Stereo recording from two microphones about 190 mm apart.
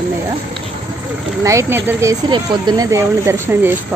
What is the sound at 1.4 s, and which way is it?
Speech, 15° right (ahead or behind).